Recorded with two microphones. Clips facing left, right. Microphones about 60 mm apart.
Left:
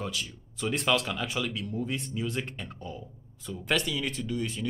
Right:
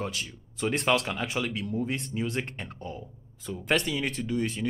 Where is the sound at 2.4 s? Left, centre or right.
Right.